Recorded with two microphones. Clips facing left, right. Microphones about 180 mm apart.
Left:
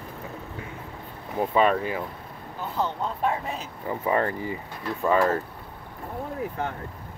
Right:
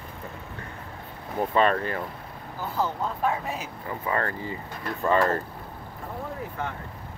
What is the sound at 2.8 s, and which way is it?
Speech, 5° right (ahead or behind).